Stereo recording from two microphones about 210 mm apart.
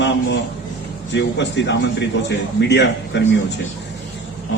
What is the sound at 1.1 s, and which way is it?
Speech, 60° left (ahead or behind).